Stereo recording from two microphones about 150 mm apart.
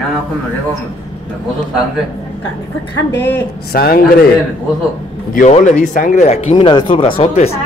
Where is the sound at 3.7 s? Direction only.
85° left.